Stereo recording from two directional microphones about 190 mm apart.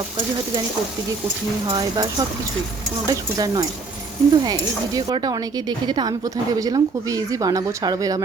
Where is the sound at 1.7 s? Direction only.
20° right (ahead or behind).